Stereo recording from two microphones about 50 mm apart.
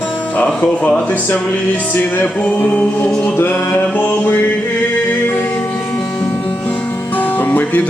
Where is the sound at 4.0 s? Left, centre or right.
Left.